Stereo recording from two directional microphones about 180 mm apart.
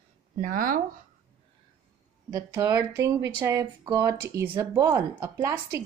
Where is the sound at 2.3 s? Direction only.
20° right (ahead or behind).